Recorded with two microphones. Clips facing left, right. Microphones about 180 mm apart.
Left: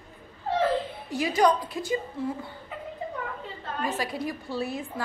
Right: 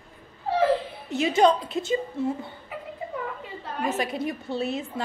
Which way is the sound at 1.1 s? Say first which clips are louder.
Right 3 dB; 25° right (ahead or behind).